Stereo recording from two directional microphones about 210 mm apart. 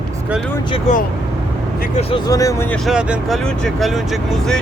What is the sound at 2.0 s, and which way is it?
Speech, 25° left (ahead or behind).